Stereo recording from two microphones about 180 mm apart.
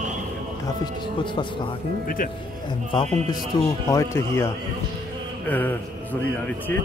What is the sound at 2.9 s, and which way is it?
Speech, 25° left (ahead or behind).